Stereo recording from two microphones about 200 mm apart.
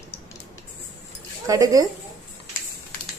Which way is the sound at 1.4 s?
15° right (ahead or behind).